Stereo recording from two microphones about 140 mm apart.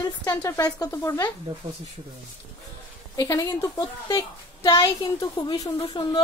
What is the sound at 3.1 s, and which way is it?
A woman's voice, 25° left (ahead or behind).